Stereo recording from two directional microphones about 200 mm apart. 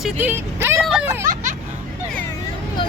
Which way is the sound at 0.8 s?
5° right (ahead or behind).